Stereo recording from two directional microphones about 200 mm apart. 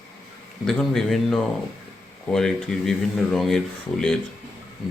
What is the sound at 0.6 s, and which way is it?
Speech, centre (ahead or behind).